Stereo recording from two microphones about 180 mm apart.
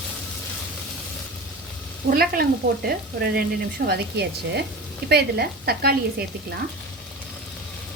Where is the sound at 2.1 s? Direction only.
55° right (ahead or behind).